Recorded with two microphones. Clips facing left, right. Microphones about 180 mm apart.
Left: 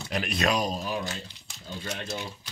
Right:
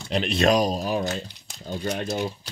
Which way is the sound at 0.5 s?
40° right (ahead or behind).